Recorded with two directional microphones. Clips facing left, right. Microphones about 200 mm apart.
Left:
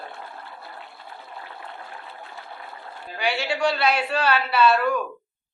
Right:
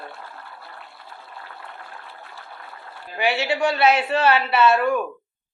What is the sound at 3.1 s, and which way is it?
A man's voice, 20° right (ahead or behind).